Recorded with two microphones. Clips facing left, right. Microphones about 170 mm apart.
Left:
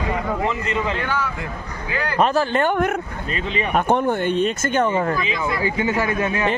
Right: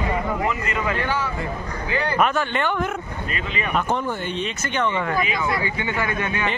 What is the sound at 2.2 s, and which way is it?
Speech, 35° left (ahead or behind).